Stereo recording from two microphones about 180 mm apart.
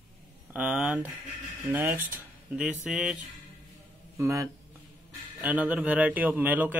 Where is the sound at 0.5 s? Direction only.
5° right (ahead or behind).